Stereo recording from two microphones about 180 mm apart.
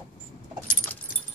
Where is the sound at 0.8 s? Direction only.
55° left (ahead or behind).